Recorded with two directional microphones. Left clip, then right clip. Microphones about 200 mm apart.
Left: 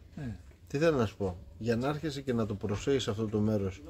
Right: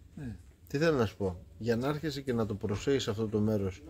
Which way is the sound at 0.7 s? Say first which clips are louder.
Left 1 dB; 20° right (ahead or behind).